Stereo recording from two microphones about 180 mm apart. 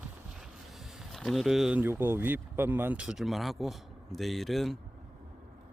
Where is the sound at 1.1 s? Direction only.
Centre (ahead or behind).